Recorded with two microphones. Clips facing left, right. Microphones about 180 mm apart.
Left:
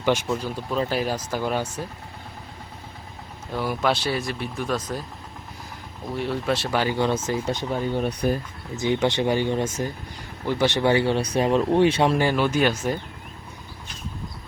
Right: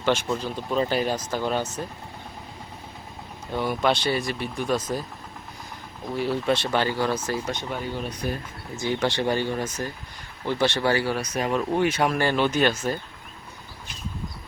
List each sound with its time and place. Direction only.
0.0 s speech: 15° left (ahead or behind)
3.5 s speech: 5° left (ahead or behind)
6.1 s speech: centre (ahead or behind)
6.9 s speech: 20° left (ahead or behind)
8.2 s speech: 50° left (ahead or behind)
8.8 s speech: 20° left (ahead or behind)
12.1 s speech: 10° left (ahead or behind)